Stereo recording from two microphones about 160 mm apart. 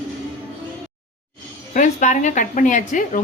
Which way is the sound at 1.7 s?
50° left (ahead or behind).